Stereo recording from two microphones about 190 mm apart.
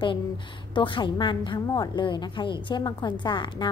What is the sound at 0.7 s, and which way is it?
A woman's voice, 25° left (ahead or behind).